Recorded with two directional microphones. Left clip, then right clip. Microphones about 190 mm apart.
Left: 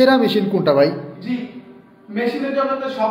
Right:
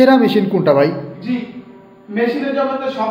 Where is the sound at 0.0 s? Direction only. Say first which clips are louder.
Right 3 dB; 5° right (ahead or behind).